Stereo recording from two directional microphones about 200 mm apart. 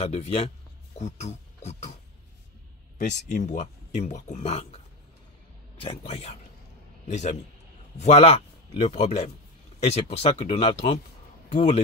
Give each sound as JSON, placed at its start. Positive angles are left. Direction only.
{"t": 0.0, "sound": "speech", "side_deg": 30}
{"t": 3.0, "sound": "a man's voice", "side_deg": 35}